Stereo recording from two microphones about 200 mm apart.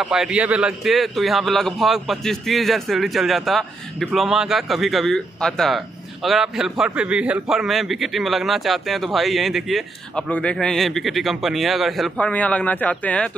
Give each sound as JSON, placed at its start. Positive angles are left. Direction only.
{"t": 0.0, "sound": "a man's voice", "side_deg": -5}